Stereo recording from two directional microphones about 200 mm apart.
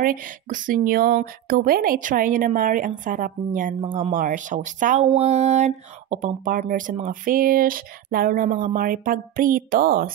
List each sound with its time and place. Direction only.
0.0 s speech: 40° right (ahead or behind)